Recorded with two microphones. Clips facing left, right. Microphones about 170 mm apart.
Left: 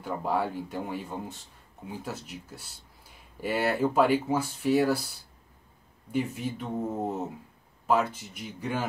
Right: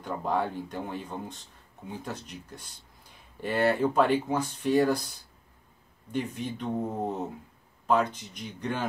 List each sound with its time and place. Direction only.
0.0 s speech: 5° left (ahead or behind)
6.1 s speech: 5° left (ahead or behind)